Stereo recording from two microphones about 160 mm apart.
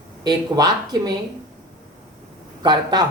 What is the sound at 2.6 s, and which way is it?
Speech, 25° right (ahead or behind).